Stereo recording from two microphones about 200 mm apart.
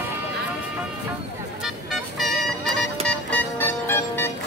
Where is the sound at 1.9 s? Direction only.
Centre (ahead or behind).